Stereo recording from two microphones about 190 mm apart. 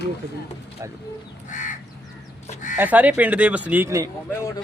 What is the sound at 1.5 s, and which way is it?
Crow, 40° left (ahead or behind).